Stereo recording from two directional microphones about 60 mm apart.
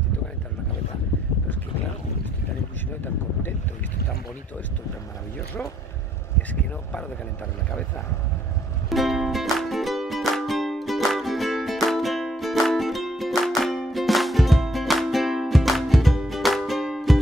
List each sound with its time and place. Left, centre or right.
6.5 s speech: left
8.8 s music: centre